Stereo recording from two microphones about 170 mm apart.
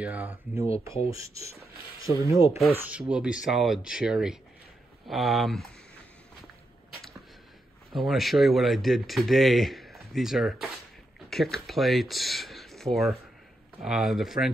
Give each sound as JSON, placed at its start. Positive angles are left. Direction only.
{"t": 0.0, "sound": "speech", "side_deg": -10}
{"t": 7.9, "sound": "speech", "side_deg": 0}